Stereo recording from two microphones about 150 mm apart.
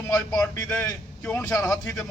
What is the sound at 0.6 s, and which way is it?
A man's voice, 10° left (ahead or behind).